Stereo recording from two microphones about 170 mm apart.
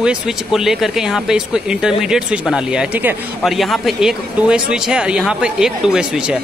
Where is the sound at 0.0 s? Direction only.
Centre (ahead or behind).